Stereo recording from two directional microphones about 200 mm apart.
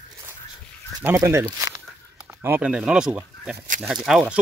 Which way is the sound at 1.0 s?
15° right (ahead or behind).